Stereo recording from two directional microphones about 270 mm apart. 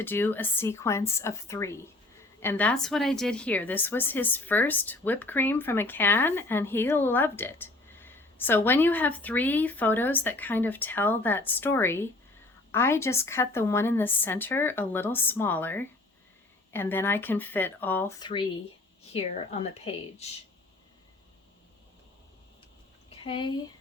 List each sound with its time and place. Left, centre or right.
0.0 s a woman's voice: centre; by 20.2 s left
23.2 s a woman's voice: centre